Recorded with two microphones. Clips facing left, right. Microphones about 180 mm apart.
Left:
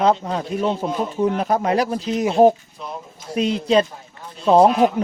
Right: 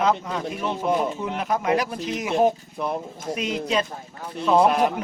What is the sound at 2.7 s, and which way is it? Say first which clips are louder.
Speech: right 6 dB; 60° right (ahead or behind).